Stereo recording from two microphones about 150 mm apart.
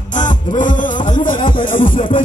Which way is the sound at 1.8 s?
35° left (ahead or behind).